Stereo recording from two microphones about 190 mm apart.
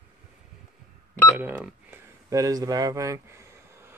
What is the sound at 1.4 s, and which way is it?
Speech, 10° right (ahead or behind).